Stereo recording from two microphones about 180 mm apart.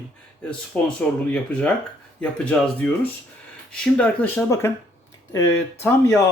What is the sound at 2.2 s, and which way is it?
Speech, 5° left (ahead or behind).